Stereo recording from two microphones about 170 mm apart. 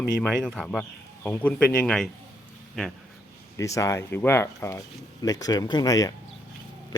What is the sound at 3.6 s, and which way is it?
Speech, 20° left (ahead or behind).